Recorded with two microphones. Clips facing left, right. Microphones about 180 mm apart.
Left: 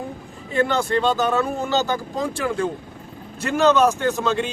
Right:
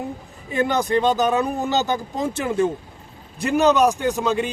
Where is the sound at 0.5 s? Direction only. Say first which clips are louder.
Even; 15° right (ahead or behind).